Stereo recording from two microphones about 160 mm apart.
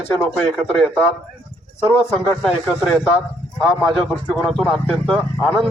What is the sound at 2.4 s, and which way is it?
Speech, centre (ahead or behind).